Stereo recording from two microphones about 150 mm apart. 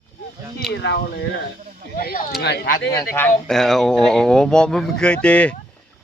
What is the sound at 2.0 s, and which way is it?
Speech, 85° left.